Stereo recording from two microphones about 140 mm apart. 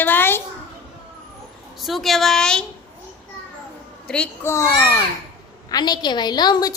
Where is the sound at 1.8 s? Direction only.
Centre (ahead or behind).